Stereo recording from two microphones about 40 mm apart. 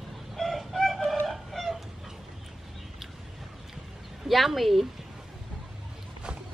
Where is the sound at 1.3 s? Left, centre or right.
Centre.